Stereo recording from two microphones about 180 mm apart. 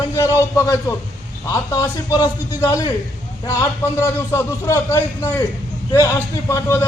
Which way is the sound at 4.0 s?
15° left (ahead or behind).